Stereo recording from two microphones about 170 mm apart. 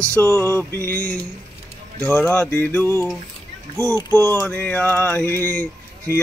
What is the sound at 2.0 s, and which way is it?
Music, 10° left (ahead or behind).